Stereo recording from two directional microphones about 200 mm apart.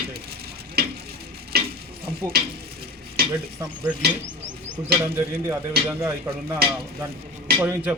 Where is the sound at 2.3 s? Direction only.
50° right (ahead or behind).